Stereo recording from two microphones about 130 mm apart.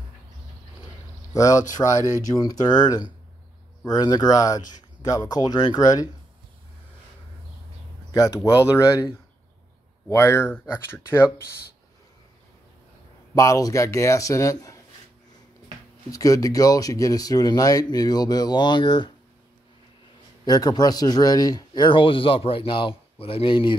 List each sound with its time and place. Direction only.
1.3 s a man's voice: 25° left (ahead or behind)
8.1 s speech: 30° left (ahead or behind)
13.3 s speech: 25° left (ahead or behind)
16.1 s speech: 25° left (ahead or behind)
20.4 s a man's voice: 30° left (ahead or behind)